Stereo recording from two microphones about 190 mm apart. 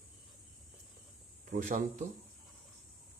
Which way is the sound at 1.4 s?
45° right (ahead or behind).